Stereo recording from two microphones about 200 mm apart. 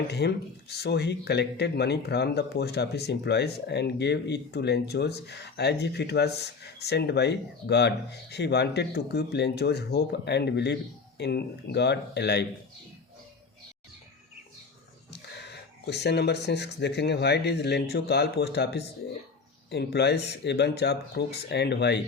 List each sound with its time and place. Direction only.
0.1 s speech: 55° left (ahead or behind)
15.1 s speech: 55° left (ahead or behind)